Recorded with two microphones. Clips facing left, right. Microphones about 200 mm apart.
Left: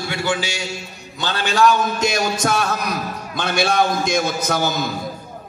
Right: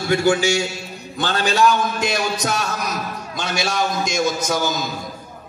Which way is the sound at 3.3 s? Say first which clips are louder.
Left 5 dB; 60° left (ahead or behind).